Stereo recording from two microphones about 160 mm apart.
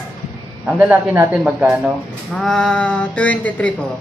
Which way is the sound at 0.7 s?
10° right (ahead or behind).